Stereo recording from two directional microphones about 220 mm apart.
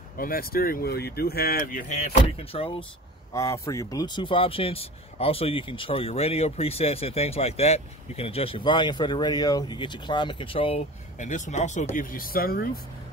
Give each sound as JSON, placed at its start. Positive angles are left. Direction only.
{"t": 0.2, "sound": "speech", "side_deg": 40}
{"t": 2.3, "sound": "speech", "side_deg": 25}
{"t": 3.3, "sound": "speech", "side_deg": 15}